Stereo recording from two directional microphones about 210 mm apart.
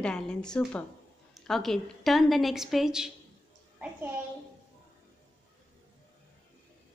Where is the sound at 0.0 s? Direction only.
5° left (ahead or behind).